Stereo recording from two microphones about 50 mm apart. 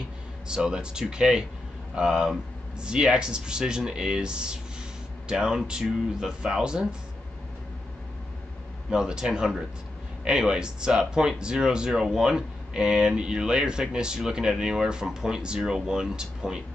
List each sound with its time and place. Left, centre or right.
0.6 s speech: centre
8.9 s speech: centre